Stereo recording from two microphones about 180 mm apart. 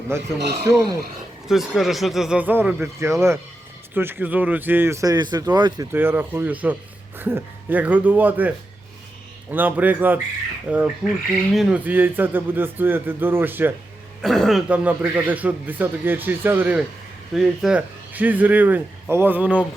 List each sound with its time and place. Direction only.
0.1 s speech: 15° right (ahead or behind)
1.5 s speech: centre (ahead or behind); by 5.9 s 25° right (ahead or behind)
5.9 s speech: 10° right (ahead or behind)
14.2 s speech: centre (ahead or behind)